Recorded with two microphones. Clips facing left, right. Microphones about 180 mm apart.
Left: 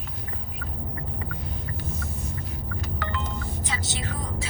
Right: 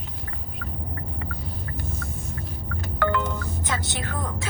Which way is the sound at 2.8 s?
60° right (ahead or behind).